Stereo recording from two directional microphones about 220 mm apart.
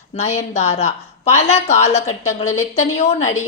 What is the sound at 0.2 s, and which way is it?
A woman's voice, 30° left (ahead or behind).